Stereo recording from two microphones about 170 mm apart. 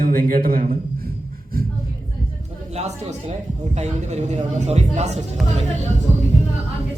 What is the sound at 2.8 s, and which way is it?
A man's voice, 40° right (ahead or behind).